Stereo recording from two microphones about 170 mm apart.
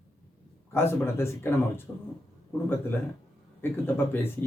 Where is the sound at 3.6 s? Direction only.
10° left (ahead or behind).